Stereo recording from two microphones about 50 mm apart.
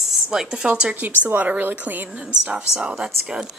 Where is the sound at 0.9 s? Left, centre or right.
Right.